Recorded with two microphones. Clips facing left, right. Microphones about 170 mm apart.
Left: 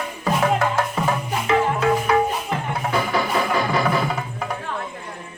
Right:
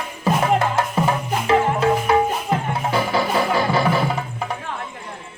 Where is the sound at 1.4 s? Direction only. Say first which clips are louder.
Right 2 dB; 30° right (ahead or behind).